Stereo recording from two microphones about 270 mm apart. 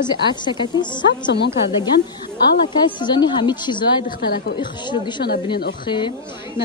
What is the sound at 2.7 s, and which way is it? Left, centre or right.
A woman's voice, centre.